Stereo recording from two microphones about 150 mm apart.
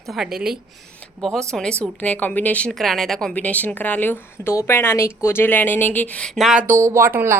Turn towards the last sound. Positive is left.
turn(degrees=-15)  # may be behind; listen again after turning